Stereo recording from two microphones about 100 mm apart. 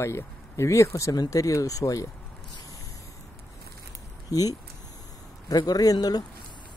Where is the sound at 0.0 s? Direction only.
30° left (ahead or behind).